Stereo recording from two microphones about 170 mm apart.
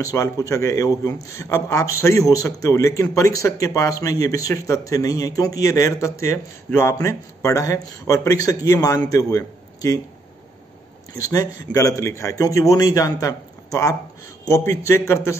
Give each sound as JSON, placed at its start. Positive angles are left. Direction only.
{"t": 0.0, "sound": "a man's voice", "side_deg": 20}
{"t": 11.1, "sound": "a man's voice", "side_deg": 20}